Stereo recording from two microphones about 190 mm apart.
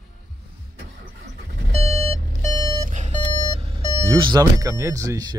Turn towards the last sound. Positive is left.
turn(degrees=-20)  # may be behind; listen again after turning